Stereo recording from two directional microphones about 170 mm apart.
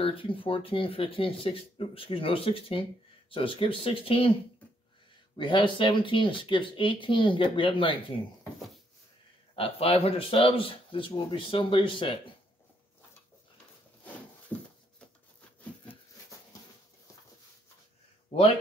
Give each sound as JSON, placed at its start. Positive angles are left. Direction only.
{"t": 0.0, "sound": "speech", "side_deg": 30}
{"t": 5.4, "sound": "speech", "side_deg": 30}
{"t": 9.6, "sound": "speech", "side_deg": 35}
{"t": 14.5, "sound": "a sound", "side_deg": 10}